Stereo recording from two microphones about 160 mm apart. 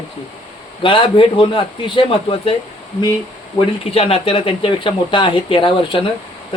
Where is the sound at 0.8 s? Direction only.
35° left (ahead or behind).